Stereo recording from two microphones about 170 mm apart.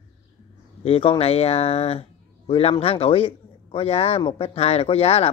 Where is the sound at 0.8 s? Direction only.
35° left (ahead or behind).